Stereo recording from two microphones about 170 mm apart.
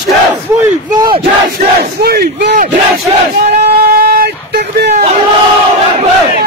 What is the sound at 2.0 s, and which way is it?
Speech, 60° right (ahead or behind).